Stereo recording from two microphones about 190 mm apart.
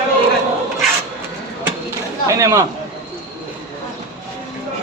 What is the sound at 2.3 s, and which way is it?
Speech, 15° right (ahead or behind).